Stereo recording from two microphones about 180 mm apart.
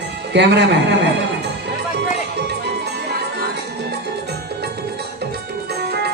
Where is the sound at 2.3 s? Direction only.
70° right (ahead or behind).